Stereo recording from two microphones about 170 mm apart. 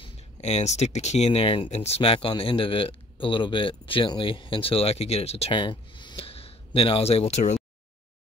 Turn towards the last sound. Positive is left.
turn(degrees=40)  # may be behind; listen again after turning